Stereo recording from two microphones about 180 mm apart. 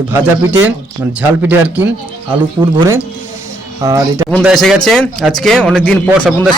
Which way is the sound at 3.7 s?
20° right (ahead or behind).